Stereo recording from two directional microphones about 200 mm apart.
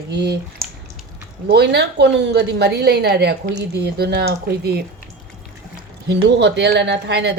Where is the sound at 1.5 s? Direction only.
55° right (ahead or behind).